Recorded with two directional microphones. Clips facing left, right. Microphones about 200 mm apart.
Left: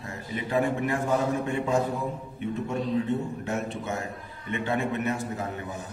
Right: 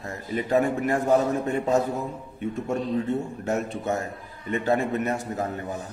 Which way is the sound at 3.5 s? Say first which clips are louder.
Right 7 dB; 40° right (ahead or behind).